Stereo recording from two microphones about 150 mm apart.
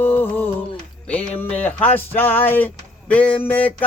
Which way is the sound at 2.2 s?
15° left (ahead or behind).